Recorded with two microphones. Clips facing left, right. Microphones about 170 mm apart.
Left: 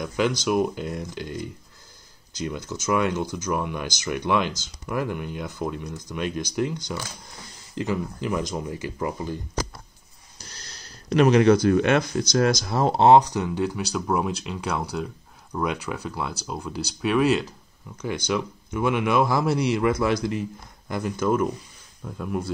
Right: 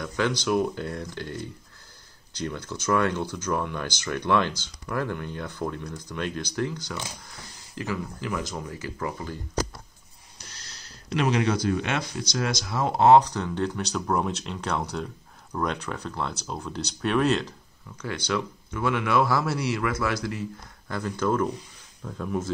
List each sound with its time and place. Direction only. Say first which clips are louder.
0.0 s a man's voice: left 3 dB; 15° left (ahead or behind)
11.1 s speech: left 8 dB; 50° left (ahead or behind); by 13.2 s 25° left (ahead or behind)
13.2 s a man's voice: left 3 dB; 10° left (ahead or behind)